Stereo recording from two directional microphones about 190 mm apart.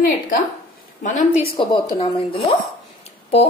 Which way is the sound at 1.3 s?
30° left (ahead or behind).